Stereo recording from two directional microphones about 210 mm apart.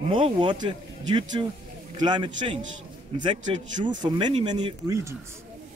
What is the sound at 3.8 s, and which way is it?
Speech, 35° right (ahead or behind).